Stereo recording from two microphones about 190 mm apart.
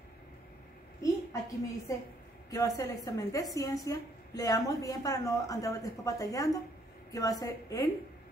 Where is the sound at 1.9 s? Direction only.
15° left (ahead or behind).